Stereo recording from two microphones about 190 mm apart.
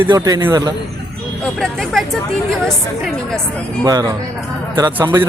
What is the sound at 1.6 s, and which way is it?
Speech, centre (ahead or behind).